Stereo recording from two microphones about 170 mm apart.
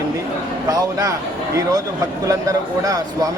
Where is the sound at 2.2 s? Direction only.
20° right (ahead or behind).